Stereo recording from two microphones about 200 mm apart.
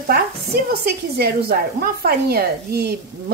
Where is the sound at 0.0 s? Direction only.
50° right (ahead or behind).